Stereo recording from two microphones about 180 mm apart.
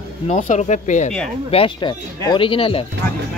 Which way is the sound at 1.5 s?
30° left (ahead or behind).